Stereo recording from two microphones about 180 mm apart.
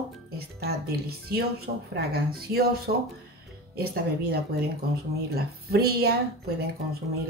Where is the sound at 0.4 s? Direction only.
60° right (ahead or behind).